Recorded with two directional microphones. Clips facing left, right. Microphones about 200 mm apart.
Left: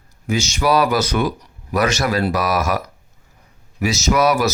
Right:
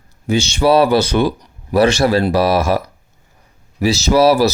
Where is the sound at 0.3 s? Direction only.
30° right (ahead or behind).